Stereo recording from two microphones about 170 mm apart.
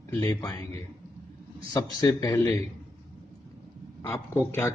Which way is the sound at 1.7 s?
20° left (ahead or behind).